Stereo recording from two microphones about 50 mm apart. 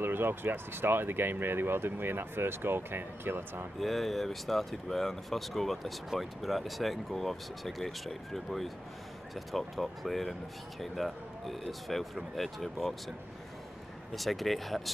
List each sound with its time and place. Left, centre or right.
0.0 s speech: right
3.8 s speech: centre
14.1 s speech: centre